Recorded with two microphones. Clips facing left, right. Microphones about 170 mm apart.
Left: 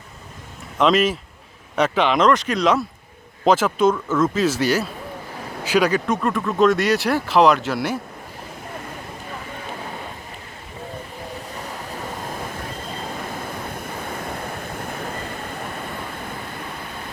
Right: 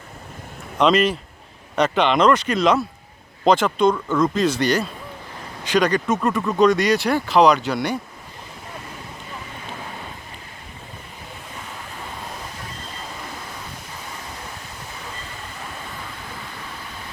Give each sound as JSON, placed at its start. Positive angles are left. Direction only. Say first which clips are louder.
{"t": 0.8, "sound": "speech", "louder": "even", "side_deg": 0}
{"t": 13.7, "sound": "waves", "louder": "left 7 dB", "side_deg": 55}